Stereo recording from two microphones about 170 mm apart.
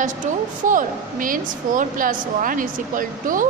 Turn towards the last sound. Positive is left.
turn(degrees=-50)  # may be behind; listen again after turning